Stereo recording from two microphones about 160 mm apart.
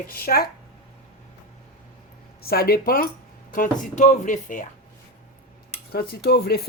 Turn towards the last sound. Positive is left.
turn(degrees=80)